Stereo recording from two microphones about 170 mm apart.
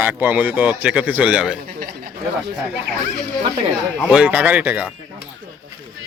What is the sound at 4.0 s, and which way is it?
Speech, 5° right (ahead or behind).